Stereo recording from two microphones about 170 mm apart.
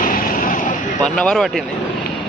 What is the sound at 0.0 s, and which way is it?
Vehicle, 55° left (ahead or behind).